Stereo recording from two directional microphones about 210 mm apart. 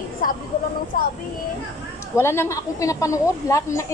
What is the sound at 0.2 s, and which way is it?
Speech, 40° left (ahead or behind).